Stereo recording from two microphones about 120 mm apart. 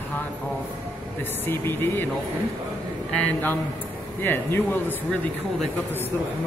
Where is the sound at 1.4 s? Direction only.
20° left (ahead or behind).